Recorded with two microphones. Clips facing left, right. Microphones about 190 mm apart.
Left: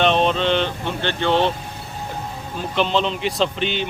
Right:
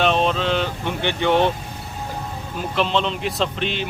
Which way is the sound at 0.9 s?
15° right (ahead or behind).